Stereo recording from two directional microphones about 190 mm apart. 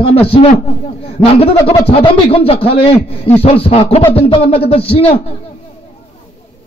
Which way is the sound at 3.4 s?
30° left (ahead or behind).